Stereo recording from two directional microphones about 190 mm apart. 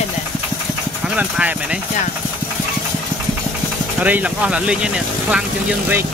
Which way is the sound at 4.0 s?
10° right (ahead or behind).